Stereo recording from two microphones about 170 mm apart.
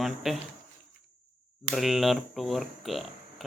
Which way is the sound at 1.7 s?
Centre (ahead or behind).